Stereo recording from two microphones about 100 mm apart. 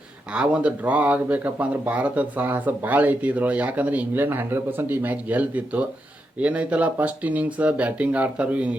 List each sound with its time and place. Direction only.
0.3 s speech: 10° right (ahead or behind)